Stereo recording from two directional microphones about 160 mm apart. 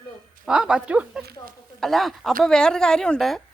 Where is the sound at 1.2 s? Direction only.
80° right.